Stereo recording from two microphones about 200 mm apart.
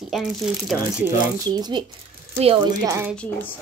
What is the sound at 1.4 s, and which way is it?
Speech, 20° right (ahead or behind).